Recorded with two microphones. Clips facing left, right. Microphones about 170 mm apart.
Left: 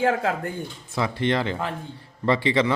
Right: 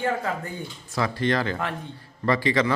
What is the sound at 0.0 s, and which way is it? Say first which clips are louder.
Speech: left 4 dB; 85° left.